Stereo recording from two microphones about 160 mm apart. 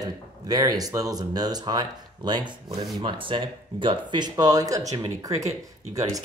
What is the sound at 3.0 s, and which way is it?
Speech, 30° right (ahead or behind).